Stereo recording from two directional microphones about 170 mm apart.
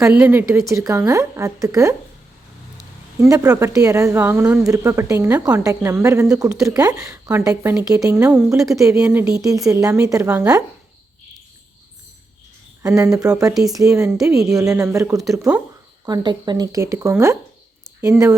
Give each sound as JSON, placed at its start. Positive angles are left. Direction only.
{"t": 0.1, "sound": "a woman's voice", "side_deg": -10}
{"t": 3.2, "sound": "a woman's voice", "side_deg": -20}
{"t": 13.0, "sound": "speech", "side_deg": -20}
{"t": 13.5, "sound": "speech", "side_deg": 0}
{"t": 13.7, "sound": "a woman's voice", "side_deg": -15}